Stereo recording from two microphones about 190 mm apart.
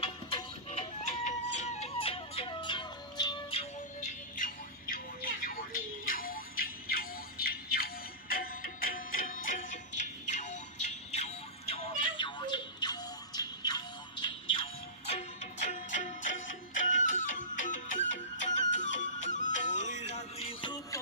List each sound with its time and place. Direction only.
0.0 s music: 30° left (ahead or behind); by 4.9 s 45° left (ahead or behind)
6.1 s music: 50° left (ahead or behind); by 21.0 s 25° left (ahead or behind)